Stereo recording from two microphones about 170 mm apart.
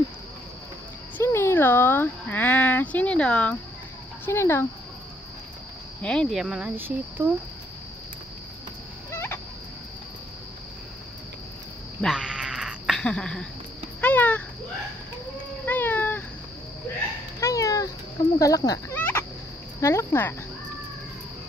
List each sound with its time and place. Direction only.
1.1 s a sound: 15° left (ahead or behind)
4.3 s speech: 15° left (ahead or behind)
6.0 s speech: 5° left (ahead or behind)
12.0 s a sound: 5° right (ahead or behind)
15.6 s cat: 10° left (ahead or behind)
17.4 s a sound: 20° left (ahead or behind)
18.4 s speech: 20° left (ahead or behind)
18.9 s turkey: 10° left (ahead or behind)
19.8 s speech: 15° left (ahead or behind)